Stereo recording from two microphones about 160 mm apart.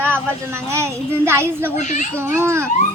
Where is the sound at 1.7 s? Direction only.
50° left (ahead or behind).